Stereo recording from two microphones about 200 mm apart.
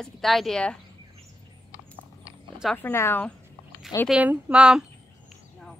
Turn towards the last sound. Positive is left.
turn(degrees=-5)  # may be behind; listen again after turning